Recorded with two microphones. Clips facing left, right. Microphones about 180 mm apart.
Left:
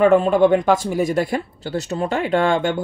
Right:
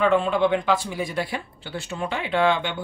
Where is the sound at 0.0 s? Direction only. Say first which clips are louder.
Left 6 dB; 45° left (ahead or behind).